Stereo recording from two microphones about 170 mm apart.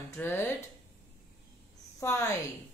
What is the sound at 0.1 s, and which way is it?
Speech, 15° left (ahead or behind).